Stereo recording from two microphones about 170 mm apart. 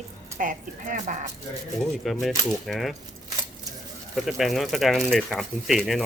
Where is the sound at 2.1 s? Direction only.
Centre (ahead or behind).